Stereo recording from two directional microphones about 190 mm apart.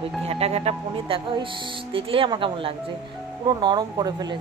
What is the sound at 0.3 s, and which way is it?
Speech, 35° right (ahead or behind).